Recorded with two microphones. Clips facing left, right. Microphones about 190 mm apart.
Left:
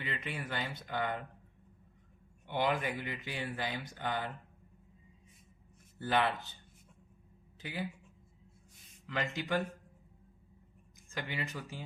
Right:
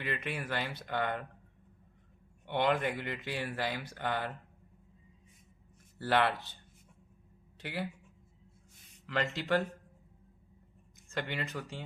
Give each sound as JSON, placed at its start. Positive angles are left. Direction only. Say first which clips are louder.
{"t": 0.0, "sound": "speech", "louder": "right 3 dB", "side_deg": -65}
{"t": 2.5, "sound": "speech", "louder": "right 3 dB", "side_deg": -65}
{"t": 6.0, "sound": "speech", "louder": "right 2 dB", "side_deg": -65}
{"t": 7.6, "sound": "speech", "louder": "right 2 dB", "side_deg": -70}
{"t": 9.0, "sound": "speech", "louder": "right 3 dB", "side_deg": -70}
{"t": 11.1, "sound": "speech", "louder": "right 3 dB", "side_deg": -65}